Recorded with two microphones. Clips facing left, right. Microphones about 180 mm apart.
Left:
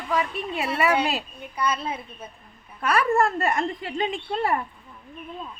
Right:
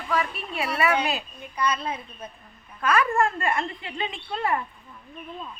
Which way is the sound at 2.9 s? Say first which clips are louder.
Left 1 dB; 35° left (ahead or behind).